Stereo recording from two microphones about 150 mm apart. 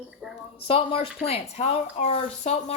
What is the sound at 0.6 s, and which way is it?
A woman's voice, 40° left (ahead or behind).